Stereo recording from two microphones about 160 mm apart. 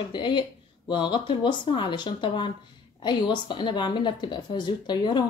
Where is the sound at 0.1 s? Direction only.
30° left (ahead or behind).